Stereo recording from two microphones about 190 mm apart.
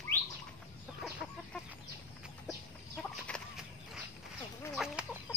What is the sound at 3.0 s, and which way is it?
Chicken, centre (ahead or behind).